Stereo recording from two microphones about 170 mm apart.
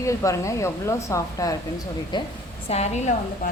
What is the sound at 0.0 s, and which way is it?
A woman's voice, 20° left (ahead or behind).